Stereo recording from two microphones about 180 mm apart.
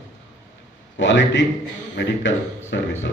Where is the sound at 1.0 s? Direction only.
80° left.